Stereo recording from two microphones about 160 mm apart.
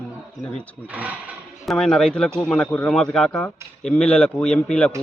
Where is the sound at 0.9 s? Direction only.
10° right (ahead or behind).